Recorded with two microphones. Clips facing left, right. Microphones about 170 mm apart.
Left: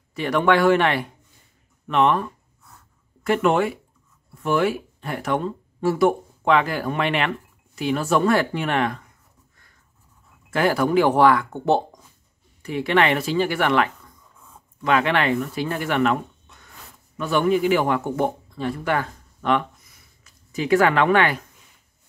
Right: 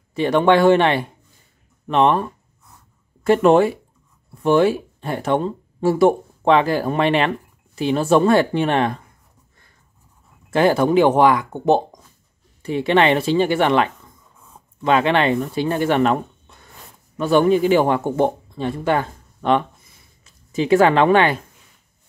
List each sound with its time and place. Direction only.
0.1 s speech: 25° right (ahead or behind)
10.5 s speech: 25° right (ahead or behind)